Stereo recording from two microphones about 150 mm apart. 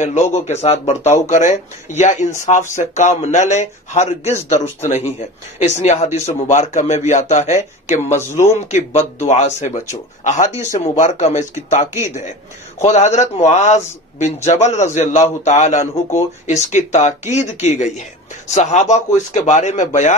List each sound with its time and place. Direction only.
0.0 s speech: 50° left (ahead or behind)
8.0 s speech: 15° left (ahead or behind)
8.5 s speech: 50° left (ahead or behind)